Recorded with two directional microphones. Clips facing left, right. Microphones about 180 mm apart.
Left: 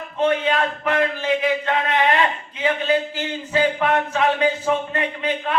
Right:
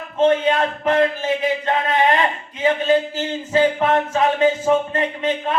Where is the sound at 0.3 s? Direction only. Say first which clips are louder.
Right 3 dB; 40° right (ahead or behind).